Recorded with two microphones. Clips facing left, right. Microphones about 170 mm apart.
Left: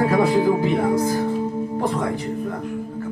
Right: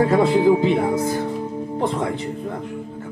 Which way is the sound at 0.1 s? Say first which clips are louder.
Right 2 dB; 20° right (ahead or behind).